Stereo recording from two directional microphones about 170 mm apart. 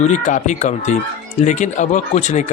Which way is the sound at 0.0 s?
45° left (ahead or behind).